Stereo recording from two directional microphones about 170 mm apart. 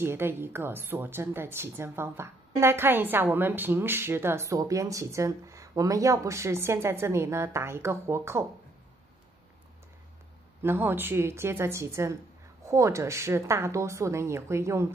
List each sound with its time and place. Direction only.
0.0 s a woman's voice: 15° right (ahead or behind)
10.6 s a woman's voice: 10° right (ahead or behind)